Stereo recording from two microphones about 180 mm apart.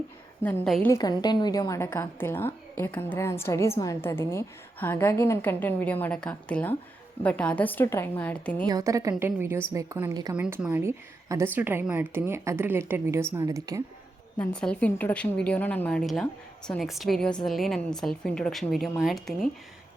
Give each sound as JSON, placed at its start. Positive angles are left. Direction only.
{"t": 0.4, "sound": "a woman's voice", "side_deg": 5}
{"t": 0.9, "sound": "a woman's voice", "side_deg": 20}
{"t": 8.6, "sound": "a woman's voice", "side_deg": -20}
{"t": 10.3, "sound": "a woman's voice", "side_deg": -5}
{"t": 14.3, "sound": "a woman's voice", "side_deg": 5}